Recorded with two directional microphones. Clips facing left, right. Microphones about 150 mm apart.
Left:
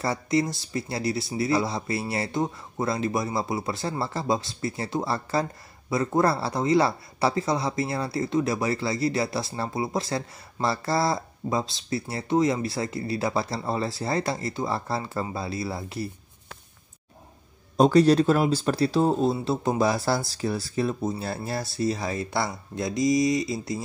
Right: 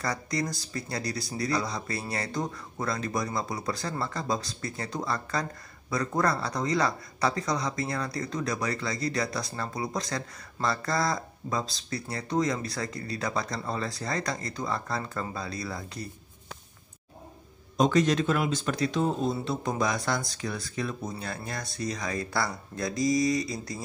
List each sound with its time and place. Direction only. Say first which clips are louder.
0.0 s speech: left 6 dB; 25° left (ahead or behind)
17.7 s speech: left 6 dB; 35° left (ahead or behind)